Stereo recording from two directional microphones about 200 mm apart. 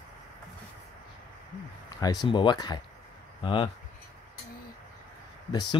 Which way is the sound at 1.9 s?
20° left (ahead or behind).